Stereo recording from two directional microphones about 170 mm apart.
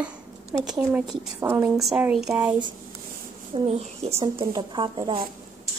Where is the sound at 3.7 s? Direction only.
40° right (ahead or behind).